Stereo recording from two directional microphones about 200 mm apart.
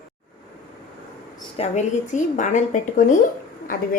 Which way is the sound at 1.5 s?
35° left (ahead or behind).